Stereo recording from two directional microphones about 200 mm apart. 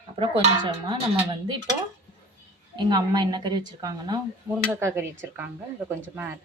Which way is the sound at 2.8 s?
20° right (ahead or behind).